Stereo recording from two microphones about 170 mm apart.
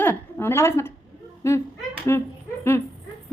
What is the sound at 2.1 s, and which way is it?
Speech, 15° left (ahead or behind).